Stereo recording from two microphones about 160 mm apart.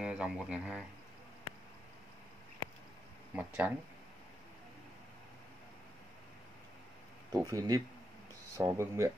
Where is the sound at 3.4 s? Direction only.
10° right (ahead or behind).